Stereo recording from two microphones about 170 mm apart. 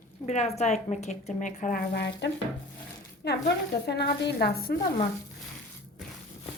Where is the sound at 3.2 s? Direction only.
75° left (ahead or behind).